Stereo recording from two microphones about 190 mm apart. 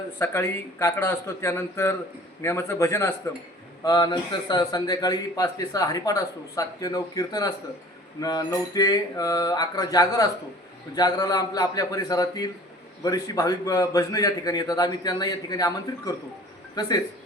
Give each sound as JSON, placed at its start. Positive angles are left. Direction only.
{"t": 0.2, "sound": "a man's voice", "side_deg": 15}